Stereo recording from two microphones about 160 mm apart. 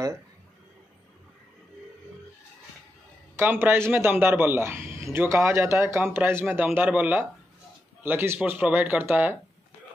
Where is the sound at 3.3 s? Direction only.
15° right (ahead or behind).